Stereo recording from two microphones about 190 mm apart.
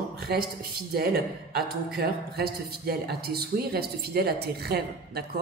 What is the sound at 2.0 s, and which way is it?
Speech, 55° right (ahead or behind).